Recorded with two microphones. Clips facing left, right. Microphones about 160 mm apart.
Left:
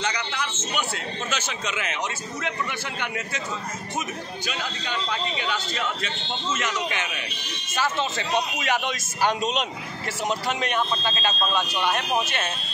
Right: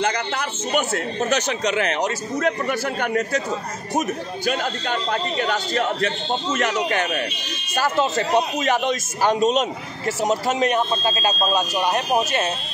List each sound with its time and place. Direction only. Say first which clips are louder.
0.0 s a man's voice: right 6 dB; 50° right (ahead or behind)
4.5 s a man's voice: right 9 dB; 50° right (ahead or behind)